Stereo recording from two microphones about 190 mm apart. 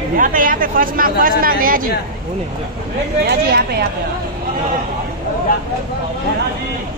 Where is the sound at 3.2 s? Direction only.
55° right (ahead or behind).